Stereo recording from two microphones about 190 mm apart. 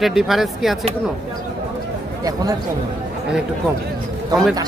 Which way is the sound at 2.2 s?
20° right (ahead or behind).